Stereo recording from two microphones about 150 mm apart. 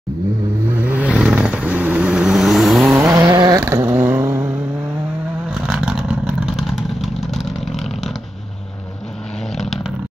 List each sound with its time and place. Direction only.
0.7 s vehicle: 10° right (ahead or behind)
3.0 s vehicle: 20° right (ahead or behind)
5.5 s vehicle: 5° right (ahead or behind)
9.6 s vehicle: centre (ahead or behind)